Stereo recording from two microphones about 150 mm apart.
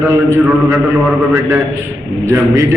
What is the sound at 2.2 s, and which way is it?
Speech, 20° right (ahead or behind).